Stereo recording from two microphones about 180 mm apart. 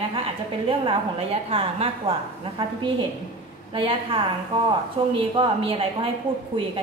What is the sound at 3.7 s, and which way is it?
Speech, 30° right (ahead or behind).